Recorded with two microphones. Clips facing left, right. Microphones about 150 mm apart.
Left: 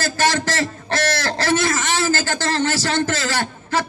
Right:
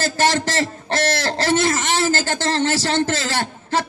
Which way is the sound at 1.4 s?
25° right (ahead or behind).